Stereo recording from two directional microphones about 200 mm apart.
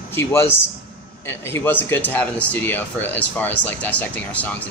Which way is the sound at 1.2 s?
10° left (ahead or behind).